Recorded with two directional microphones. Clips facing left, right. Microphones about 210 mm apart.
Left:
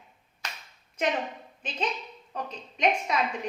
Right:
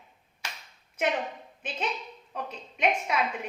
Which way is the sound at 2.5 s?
10° right (ahead or behind).